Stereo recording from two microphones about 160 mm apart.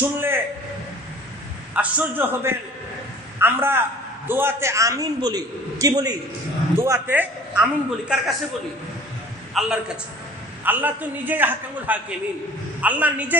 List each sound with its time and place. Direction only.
0.0 s a sound: 15° right (ahead or behind)
1.8 s a man's voice: 10° right (ahead or behind)
9.5 s a man's voice: centre (ahead or behind)